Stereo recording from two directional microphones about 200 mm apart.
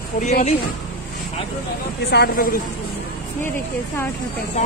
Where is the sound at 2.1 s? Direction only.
50° left (ahead or behind).